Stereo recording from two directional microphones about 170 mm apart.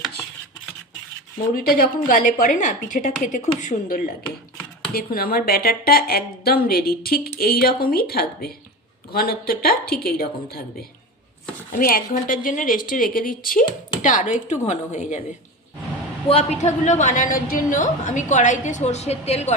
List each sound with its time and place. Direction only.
1.5 s a woman's voice: 55° left (ahead or behind)
16.3 s a woman's voice: 40° left (ahead or behind)